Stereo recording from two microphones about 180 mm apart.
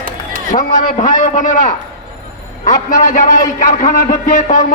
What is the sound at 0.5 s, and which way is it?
A man's voice, 45° left (ahead or behind).